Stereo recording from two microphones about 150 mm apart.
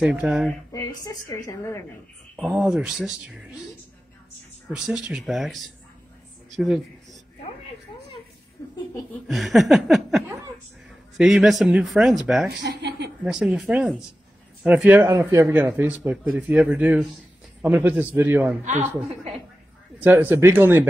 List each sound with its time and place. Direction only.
0.0 s speech: 5° right (ahead or behind)
0.7 s a woman's voice: 20° left (ahead or behind)
2.3 s speech: 5° right (ahead or behind)
4.6 s speech: 5° right (ahead or behind)
8.6 s a sound: 20° left (ahead or behind)
9.3 s speech: centre (ahead or behind)
10.2 s chuckle: 15° right (ahead or behind)
11.1 s speech: centre (ahead or behind)
20.0 s speech: 15° right (ahead or behind)